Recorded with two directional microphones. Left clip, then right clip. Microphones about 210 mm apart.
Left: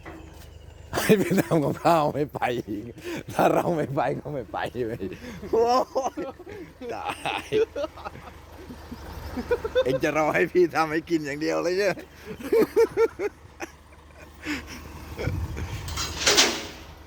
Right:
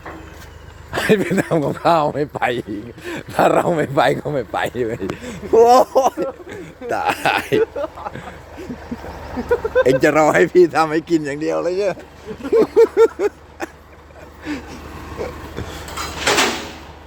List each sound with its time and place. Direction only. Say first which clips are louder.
0.9 s speech: right 5 dB; 20° left (ahead or behind); by 7.6 s 25° right (ahead or behind)
7.6 s speech: right 6 dB; 50° left (ahead or behind)
9.2 s vehicle: right 8 dB; 50° left (ahead or behind)
9.8 s speech: right 10 dB; 20° right (ahead or behind)
11.3 s speech: right 5 dB; 10° left (ahead or behind)
12.4 s a sound: right 8 dB; 10° left (ahead or behind); by 13.7 s 10° right (ahead or behind)
14.4 s a sound: right 4 dB; 5° left (ahead or behind)
15.9 s bird: right 4 dB; 45° left (ahead or behind)